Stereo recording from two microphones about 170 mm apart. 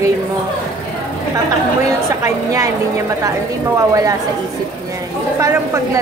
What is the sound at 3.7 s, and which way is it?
Speech, 20° right (ahead or behind).